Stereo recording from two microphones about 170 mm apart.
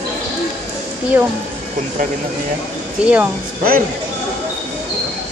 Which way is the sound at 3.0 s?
5° right (ahead or behind).